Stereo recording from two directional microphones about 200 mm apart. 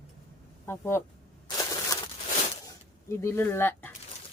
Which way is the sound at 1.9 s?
20° left (ahead or behind).